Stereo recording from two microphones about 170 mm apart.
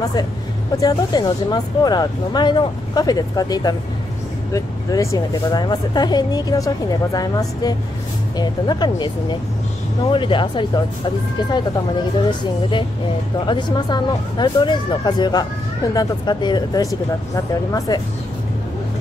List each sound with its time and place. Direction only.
0.7 s speech: 20° left (ahead or behind)
12.3 s speech: 30° left (ahead or behind)